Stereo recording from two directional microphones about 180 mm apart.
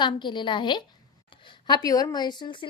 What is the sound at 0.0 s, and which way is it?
A woman's voice, 25° left (ahead or behind).